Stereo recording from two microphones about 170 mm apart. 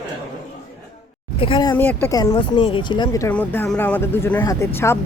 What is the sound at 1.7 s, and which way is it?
Speech, 10° left (ahead or behind).